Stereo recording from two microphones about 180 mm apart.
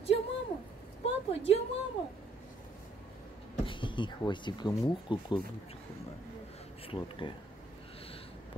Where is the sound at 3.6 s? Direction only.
25° left (ahead or behind).